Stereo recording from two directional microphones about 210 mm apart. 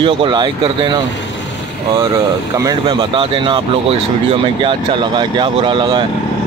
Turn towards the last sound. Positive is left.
turn(degrees=-25)  # may be behind; listen again after turning